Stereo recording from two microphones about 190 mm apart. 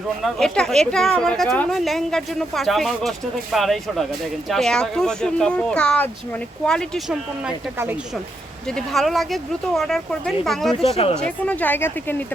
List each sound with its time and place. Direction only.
0.2 s speech: centre (ahead or behind)
10.8 s speech: 35° left (ahead or behind)
11.2 s a woman's voice: 10° left (ahead or behind)